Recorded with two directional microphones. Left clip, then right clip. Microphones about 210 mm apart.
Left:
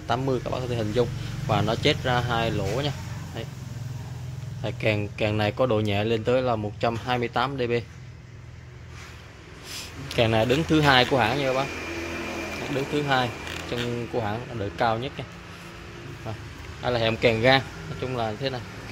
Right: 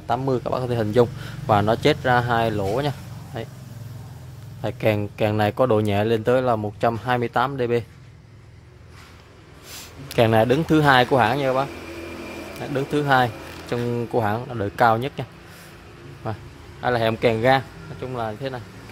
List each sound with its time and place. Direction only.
0.0 s speech: 15° right (ahead or behind)
4.6 s speech: 20° right (ahead or behind)
9.7 s speech: 25° right (ahead or behind)
12.7 s speech: 20° right (ahead or behind)
16.2 s speech: 30° right (ahead or behind); by 18.6 s 10° right (ahead or behind)